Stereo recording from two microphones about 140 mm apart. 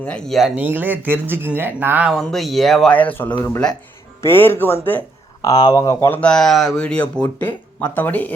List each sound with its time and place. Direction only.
0.0 s speech: 5° left (ahead or behind); by 2.0 s 15° right (ahead or behind)
2.0 s speech: centre (ahead or behind)
5.4 s speech: 25° left (ahead or behind)
6.1 s speech: 5° left (ahead or behind)